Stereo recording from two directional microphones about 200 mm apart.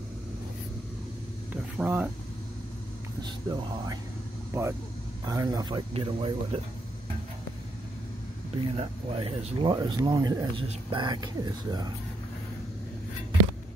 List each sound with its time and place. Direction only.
1.5 s a sound: 10° right (ahead or behind)
4.5 s speech: 15° right (ahead or behind)
8.7 s speech: 30° right (ahead or behind)